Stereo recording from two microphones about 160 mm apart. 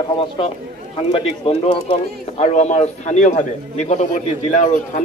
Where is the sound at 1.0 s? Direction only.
40° left (ahead or behind).